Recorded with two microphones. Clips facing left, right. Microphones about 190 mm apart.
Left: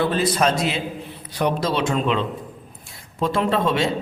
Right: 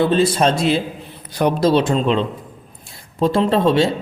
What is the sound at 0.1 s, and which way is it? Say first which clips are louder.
A man's voice: right 4 dB; 25° right (ahead or behind).